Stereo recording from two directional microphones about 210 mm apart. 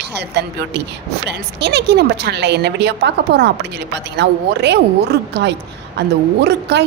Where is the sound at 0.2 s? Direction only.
55° right (ahead or behind).